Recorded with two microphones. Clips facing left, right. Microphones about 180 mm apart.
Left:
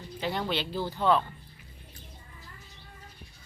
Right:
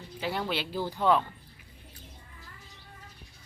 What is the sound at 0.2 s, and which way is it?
Speech, 5° right (ahead or behind).